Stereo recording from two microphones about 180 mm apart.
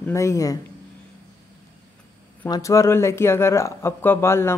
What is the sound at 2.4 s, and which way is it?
Speech, 20° left (ahead or behind).